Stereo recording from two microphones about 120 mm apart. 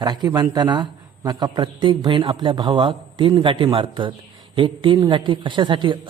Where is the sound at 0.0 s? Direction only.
35° right (ahead or behind).